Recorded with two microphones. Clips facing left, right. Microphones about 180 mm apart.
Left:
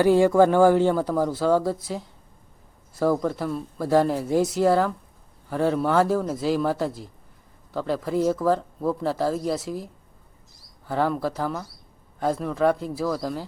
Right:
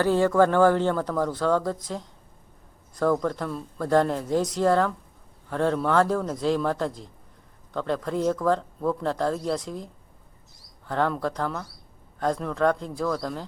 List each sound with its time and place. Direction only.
0.0 s speech: 10° left (ahead or behind)